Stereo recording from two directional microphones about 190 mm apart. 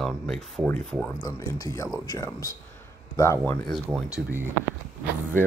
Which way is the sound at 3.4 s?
5° left (ahead or behind).